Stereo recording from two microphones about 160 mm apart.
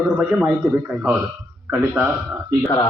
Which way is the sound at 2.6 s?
10° left (ahead or behind).